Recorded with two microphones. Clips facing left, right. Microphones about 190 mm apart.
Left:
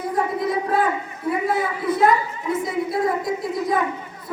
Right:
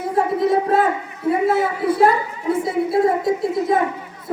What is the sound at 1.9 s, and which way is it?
A woman's voice, 30° right (ahead or behind).